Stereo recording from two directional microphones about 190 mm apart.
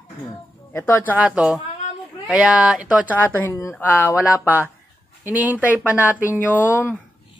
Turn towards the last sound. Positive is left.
turn(degrees=-10)  # may be behind; listen again after turning